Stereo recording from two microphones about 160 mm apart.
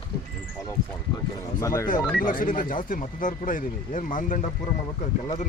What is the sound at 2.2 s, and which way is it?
Speech, 55° left (ahead or behind).